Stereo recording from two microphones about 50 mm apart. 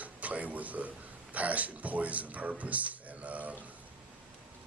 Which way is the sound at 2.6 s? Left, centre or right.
Right.